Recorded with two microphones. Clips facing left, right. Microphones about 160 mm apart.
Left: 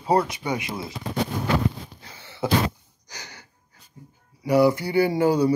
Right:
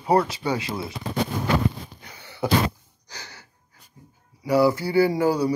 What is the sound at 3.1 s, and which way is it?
Wheeze, 15° left (ahead or behind).